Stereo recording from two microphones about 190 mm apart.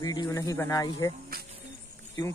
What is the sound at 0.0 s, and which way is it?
Speech, 20° left (ahead or behind).